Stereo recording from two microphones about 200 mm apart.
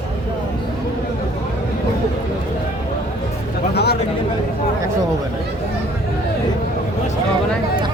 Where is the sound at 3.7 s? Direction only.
55° left (ahead or behind).